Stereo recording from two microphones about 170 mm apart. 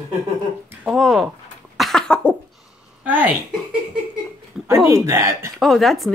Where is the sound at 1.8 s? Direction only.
Centre (ahead or behind).